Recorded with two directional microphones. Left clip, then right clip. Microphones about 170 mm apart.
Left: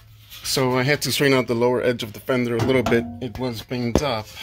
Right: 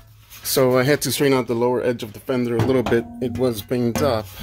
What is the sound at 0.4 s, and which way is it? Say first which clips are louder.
Speech: right 4 dB; 25° right (ahead or behind).